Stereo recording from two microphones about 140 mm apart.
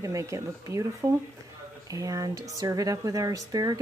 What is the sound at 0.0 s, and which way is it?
A woman's voice, 20° right (ahead or behind).